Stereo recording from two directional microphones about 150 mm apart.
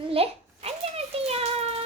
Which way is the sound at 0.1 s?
40° right (ahead or behind).